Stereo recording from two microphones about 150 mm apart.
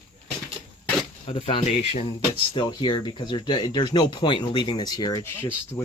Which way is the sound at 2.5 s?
30° left (ahead or behind).